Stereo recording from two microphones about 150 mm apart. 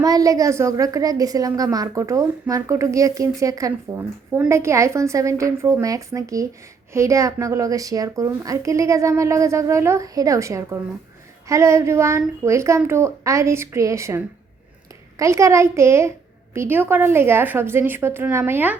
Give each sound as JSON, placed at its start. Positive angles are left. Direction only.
{"t": 0.0, "sound": "a woman's voice", "side_deg": -25}